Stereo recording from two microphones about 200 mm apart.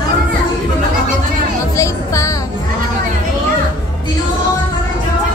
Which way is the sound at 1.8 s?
15° left (ahead or behind).